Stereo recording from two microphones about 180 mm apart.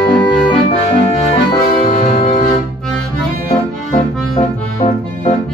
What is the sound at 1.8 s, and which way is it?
Music, 35° left (ahead or behind).